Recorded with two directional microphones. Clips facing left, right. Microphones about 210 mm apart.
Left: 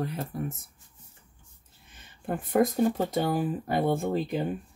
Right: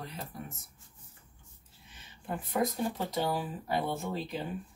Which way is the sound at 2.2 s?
50° left (ahead or behind).